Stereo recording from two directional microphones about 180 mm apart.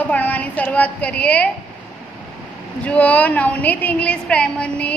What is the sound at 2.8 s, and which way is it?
A woman's voice, 10° left (ahead or behind).